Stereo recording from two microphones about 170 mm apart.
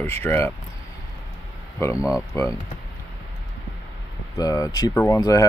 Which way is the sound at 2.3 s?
15° left (ahead or behind).